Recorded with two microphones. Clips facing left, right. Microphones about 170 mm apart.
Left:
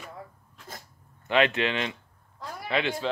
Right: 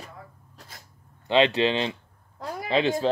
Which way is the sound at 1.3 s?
30° right (ahead or behind).